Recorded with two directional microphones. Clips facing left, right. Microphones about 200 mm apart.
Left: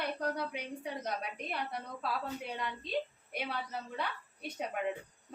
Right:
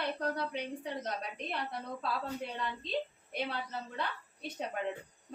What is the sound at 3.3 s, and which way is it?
A woman's voice, 10° left (ahead or behind).